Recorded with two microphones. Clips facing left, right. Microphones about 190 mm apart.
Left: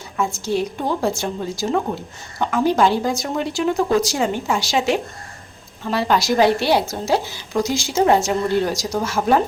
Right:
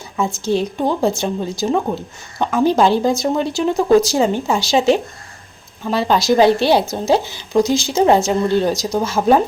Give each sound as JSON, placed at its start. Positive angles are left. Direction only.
{"t": 0.4, "sound": "speech", "side_deg": -20}